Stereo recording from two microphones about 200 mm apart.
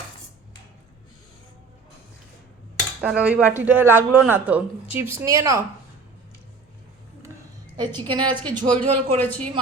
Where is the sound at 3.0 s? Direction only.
5° right (ahead or behind).